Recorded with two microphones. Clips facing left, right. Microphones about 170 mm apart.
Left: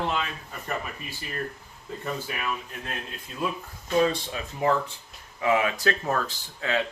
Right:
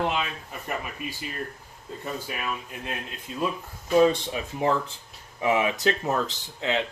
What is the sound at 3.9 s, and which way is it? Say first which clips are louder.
Speech: right 4 dB; 20° right (ahead or behind).